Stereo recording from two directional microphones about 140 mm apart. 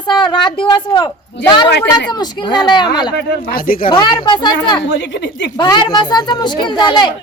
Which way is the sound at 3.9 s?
30° left (ahead or behind).